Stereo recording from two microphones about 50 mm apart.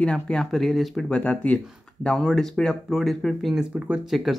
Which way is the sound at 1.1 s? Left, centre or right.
Left.